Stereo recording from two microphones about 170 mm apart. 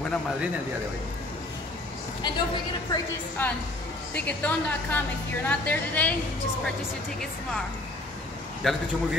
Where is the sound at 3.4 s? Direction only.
10° left (ahead or behind).